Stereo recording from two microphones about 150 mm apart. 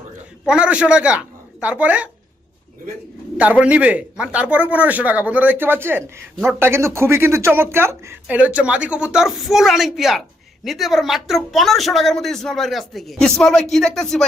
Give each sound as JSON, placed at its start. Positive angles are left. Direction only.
{"t": 0.4, "sound": "a man's voice", "side_deg": -5}
{"t": 3.3, "sound": "a man's voice", "side_deg": -10}
{"t": 6.3, "sound": "a woman's voice", "side_deg": -5}
{"t": 6.6, "sound": "a man's voice", "side_deg": -15}